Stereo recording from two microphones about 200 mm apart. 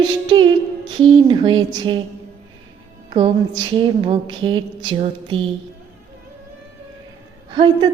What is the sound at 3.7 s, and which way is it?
Music, 25° right (ahead or behind).